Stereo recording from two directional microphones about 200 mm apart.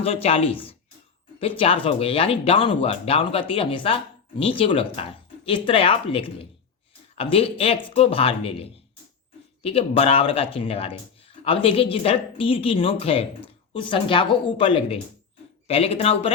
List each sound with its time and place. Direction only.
0.0 s speech: 30° left (ahead or behind)